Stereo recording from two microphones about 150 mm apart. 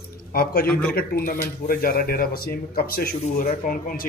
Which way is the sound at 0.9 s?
85° left.